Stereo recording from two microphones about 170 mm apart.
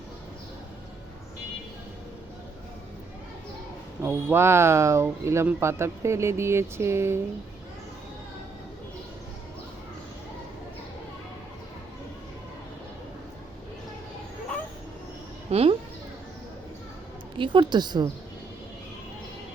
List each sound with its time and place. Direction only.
4.0 s speech: 15° right (ahead or behind)
15.4 s speech: 35° right (ahead or behind)
17.3 s a woman's voice: 30° right (ahead or behind)